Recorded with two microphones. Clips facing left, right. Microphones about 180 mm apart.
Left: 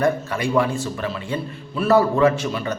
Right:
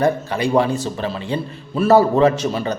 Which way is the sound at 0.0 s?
35° right (ahead or behind).